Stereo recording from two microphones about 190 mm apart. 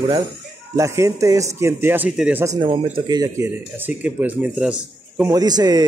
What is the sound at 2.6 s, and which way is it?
Speech, 25° right (ahead or behind).